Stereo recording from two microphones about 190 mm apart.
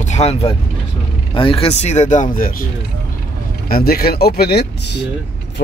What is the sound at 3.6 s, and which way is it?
Speech, 50° left (ahead or behind).